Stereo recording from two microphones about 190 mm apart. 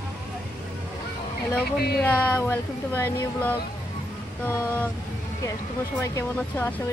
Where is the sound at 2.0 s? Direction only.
10° left (ahead or behind).